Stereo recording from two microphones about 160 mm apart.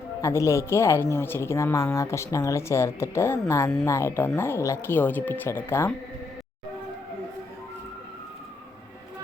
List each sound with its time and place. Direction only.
0.2 s speech: 20° left (ahead or behind)